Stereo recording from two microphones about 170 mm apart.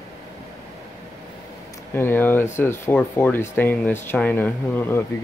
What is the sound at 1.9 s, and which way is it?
Speech, 10° left (ahead or behind).